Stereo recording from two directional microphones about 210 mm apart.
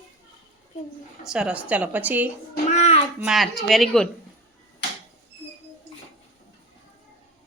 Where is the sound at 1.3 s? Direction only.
5° right (ahead or behind).